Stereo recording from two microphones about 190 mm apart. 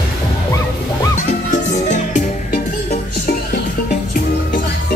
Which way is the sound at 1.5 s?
40° left (ahead or behind).